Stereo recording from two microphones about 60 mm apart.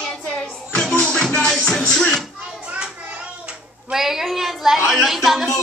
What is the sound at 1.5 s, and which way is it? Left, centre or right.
Speech, centre.